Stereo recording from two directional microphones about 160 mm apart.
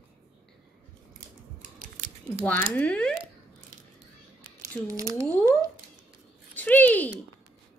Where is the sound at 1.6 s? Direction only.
55° right (ahead or behind).